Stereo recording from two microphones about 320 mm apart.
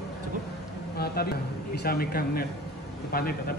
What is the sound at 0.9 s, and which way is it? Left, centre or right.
A man's voice, left.